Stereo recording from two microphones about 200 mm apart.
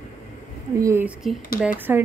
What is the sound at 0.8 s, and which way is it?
Speech, 15° right (ahead or behind).